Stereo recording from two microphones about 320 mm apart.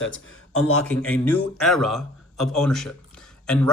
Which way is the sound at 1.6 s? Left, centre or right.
Centre.